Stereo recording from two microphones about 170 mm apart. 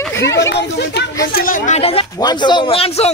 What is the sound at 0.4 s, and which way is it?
Speech, 85° left.